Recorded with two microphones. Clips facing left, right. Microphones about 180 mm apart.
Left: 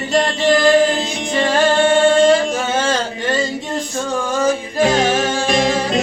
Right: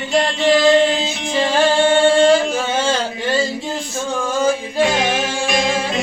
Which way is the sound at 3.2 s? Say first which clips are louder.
Right 1 dB; centre (ahead or behind).